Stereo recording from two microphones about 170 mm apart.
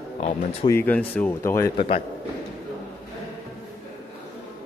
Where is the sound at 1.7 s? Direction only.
40° left (ahead or behind).